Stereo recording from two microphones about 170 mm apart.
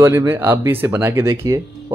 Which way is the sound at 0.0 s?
15° right (ahead or behind).